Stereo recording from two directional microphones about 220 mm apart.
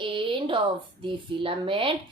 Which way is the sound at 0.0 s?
25° right (ahead or behind).